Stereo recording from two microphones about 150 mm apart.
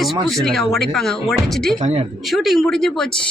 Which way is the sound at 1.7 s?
45° right (ahead or behind).